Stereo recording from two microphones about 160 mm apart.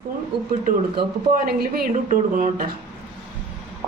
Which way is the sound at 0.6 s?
65° right (ahead or behind).